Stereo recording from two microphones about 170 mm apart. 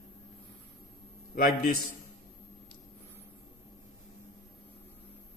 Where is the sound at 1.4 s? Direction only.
55° left (ahead or behind).